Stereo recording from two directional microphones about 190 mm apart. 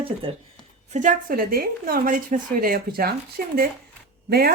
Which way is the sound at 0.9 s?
45° right (ahead or behind).